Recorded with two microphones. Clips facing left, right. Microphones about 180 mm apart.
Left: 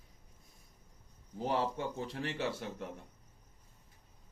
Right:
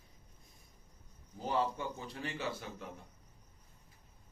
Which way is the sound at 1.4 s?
75° left (ahead or behind).